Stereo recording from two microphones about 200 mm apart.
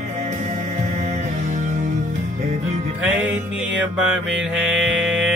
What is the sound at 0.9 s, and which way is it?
Music, 35° right (ahead or behind).